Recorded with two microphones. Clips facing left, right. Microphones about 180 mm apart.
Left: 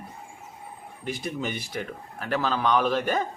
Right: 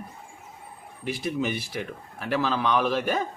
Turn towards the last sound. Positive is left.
turn(degrees=-10)  # may be behind; listen again after turning